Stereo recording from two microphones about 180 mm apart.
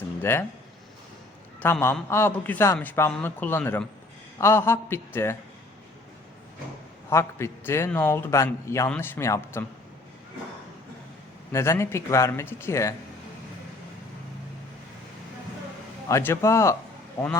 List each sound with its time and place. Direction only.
0.2 s speech: 10° left (ahead or behind)
1.5 s a man's voice: 10° left (ahead or behind)
7.1 s a man's voice: 15° left (ahead or behind)
11.5 s a man's voice: 15° left (ahead or behind)
16.0 s a man's voice: 15° left (ahead or behind)